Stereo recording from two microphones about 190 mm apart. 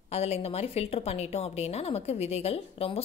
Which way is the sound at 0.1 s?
35° left (ahead or behind).